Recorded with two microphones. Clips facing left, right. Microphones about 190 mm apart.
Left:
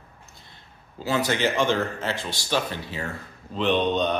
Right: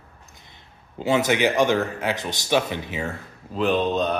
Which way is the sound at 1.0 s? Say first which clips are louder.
Right 4 dB; 20° right (ahead or behind).